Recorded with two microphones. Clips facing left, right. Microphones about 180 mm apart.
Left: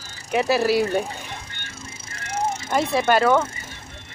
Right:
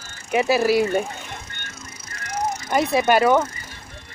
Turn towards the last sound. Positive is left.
turn(degrees=-10)  # may be behind; listen again after turning